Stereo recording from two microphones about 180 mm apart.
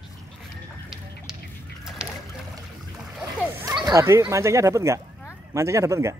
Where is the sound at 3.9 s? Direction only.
15° right (ahead or behind).